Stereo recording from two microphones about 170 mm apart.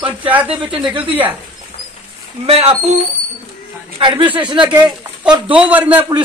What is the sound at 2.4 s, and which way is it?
Speech, 35° right (ahead or behind).